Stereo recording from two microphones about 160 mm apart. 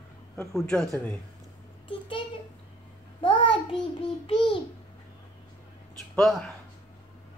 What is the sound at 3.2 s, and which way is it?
Child singing, 35° left (ahead or behind).